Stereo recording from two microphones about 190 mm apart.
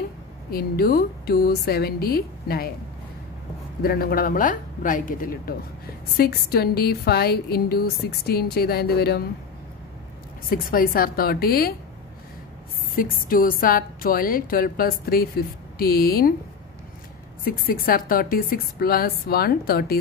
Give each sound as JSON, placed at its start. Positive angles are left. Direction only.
{"t": 0.5, "sound": "a woman's voice", "side_deg": 55}
{"t": 3.8, "sound": "a woman's voice", "side_deg": 50}
{"t": 10.5, "sound": "a woman's voice", "side_deg": 50}
{"t": 12.9, "sound": "a woman's voice", "side_deg": 50}
{"t": 17.4, "sound": "a woman's voice", "side_deg": 50}